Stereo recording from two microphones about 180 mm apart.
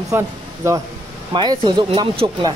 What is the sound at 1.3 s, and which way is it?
Speech, 25° right (ahead or behind).